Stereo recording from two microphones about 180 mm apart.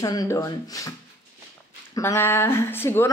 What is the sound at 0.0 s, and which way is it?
Speech, 20° left (ahead or behind).